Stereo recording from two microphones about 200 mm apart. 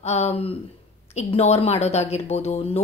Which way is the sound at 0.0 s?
35° left (ahead or behind).